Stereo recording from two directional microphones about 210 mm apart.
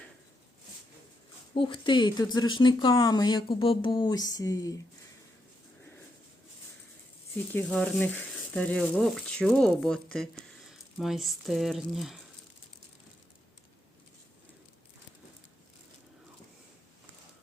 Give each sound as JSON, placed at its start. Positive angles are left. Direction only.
{"t": 1.5, "sound": "speech", "side_deg": 25}
{"t": 7.5, "sound": "speech", "side_deg": 5}